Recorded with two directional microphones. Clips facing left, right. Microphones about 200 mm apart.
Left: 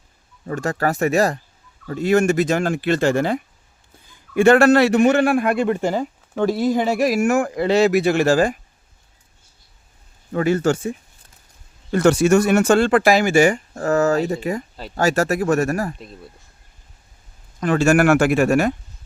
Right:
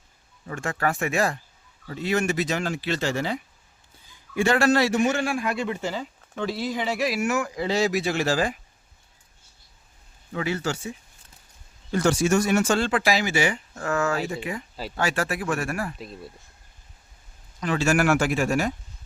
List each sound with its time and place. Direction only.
0.4 s a man's voice: 40° left (ahead or behind)
10.3 s a man's voice: 50° left (ahead or behind)
11.9 s a man's voice: 65° left (ahead or behind); by 16.0 s 40° left (ahead or behind)
16.0 s speech: centre (ahead or behind)
17.6 s speech: 50° left (ahead or behind)